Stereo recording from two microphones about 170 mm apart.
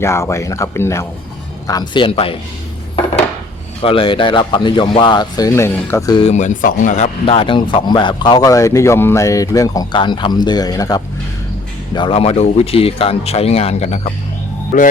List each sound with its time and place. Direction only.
0.0 s speech: 15° left (ahead or behind); by 2.3 s 30° left (ahead or behind)
3.8 s speech: 30° left (ahead or behind)
6.2 s speech: 45° left (ahead or behind); by 11.0 s 20° left (ahead or behind)
11.9 s a man's voice: 30° left (ahead or behind); by 14.9 s 50° left (ahead or behind)